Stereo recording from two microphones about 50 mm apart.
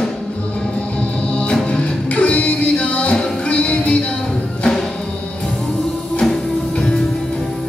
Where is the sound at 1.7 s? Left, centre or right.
Left.